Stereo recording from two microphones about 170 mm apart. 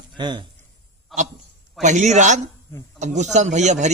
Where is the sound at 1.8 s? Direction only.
45° right (ahead or behind).